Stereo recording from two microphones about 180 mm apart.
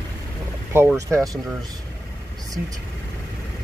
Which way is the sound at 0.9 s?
20° right (ahead or behind).